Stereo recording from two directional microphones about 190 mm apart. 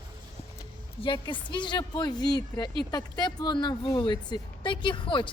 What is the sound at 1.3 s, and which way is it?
Speech, 25° left (ahead or behind).